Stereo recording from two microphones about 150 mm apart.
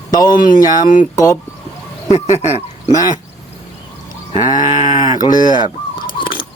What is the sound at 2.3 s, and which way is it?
Speech, 50° left (ahead or behind).